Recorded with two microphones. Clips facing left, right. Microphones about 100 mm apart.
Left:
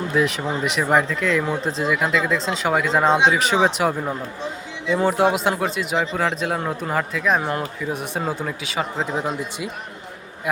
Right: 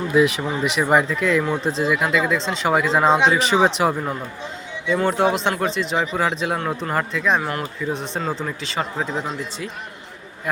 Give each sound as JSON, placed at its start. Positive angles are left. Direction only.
{"t": 0.1, "sound": "speech", "side_deg": -5}